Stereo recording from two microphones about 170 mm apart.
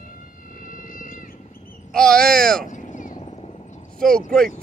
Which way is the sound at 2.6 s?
45° left (ahead or behind).